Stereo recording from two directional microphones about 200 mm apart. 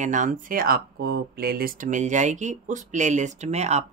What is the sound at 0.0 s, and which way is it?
Speech, 40° right (ahead or behind).